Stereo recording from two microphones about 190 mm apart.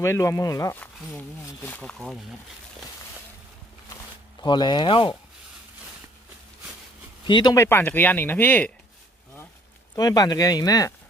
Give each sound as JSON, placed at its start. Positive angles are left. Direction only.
{"t": 0.0, "sound": "speech", "side_deg": 15}
{"t": 4.4, "sound": "speech", "side_deg": 25}
{"t": 7.3, "sound": "speech", "side_deg": 25}
{"t": 9.9, "sound": "speech", "side_deg": 20}